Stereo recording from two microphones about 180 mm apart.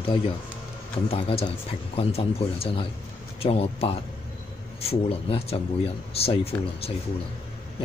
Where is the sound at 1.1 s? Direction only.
30° left (ahead or behind).